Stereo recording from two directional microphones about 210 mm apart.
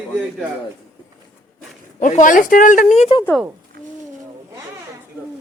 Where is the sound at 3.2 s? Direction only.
5° left (ahead or behind).